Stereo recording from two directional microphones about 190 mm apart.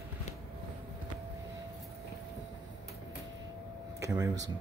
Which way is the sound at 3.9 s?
15° right (ahead or behind).